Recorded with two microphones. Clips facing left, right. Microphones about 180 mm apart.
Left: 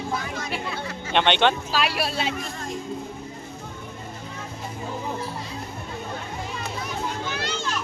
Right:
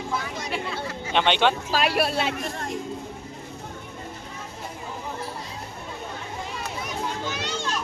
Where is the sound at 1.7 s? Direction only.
50° right (ahead or behind).